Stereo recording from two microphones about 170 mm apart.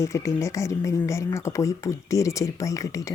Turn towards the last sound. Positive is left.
turn(degrees=20)  # may be behind; listen again after turning